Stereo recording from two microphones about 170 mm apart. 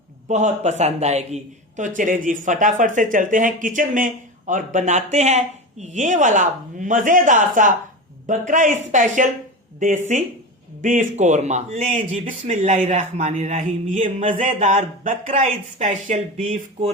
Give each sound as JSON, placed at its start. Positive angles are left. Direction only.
{"t": 0.3, "sound": "a man's voice", "side_deg": -45}